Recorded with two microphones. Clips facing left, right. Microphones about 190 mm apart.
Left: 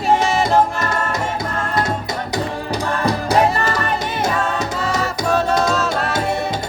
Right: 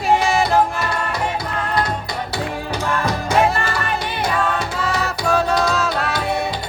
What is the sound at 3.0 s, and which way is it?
Music, 40° left (ahead or behind).